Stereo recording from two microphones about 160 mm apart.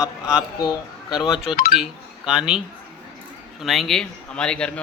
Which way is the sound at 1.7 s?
5° right (ahead or behind).